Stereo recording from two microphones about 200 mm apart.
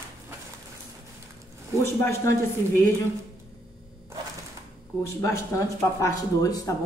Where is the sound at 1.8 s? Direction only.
15° left (ahead or behind).